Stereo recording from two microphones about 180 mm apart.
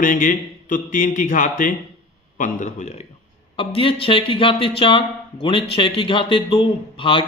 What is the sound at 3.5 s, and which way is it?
A man's voice, 30° left (ahead or behind).